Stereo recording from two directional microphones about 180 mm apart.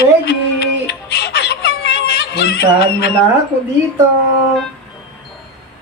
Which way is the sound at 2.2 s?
65° left (ahead or behind).